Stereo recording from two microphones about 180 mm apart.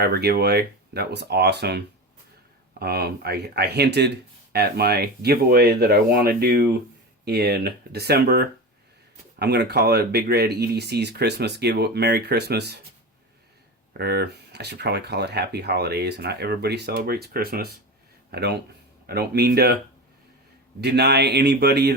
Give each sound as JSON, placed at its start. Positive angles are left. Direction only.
{"t": 0.0, "sound": "speech", "side_deg": -60}
{"t": 13.9, "sound": "speech", "side_deg": -60}
{"t": 20.8, "sound": "speech", "side_deg": -70}